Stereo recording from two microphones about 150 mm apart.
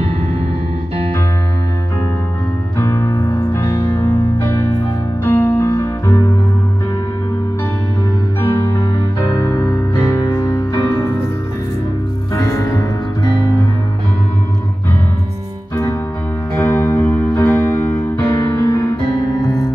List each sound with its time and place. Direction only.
2.8 s music: 15° left (ahead or behind)
8.4 s music: 15° left (ahead or behind)
12.4 s music: 20° left (ahead or behind)
15.7 s music: 15° left (ahead or behind)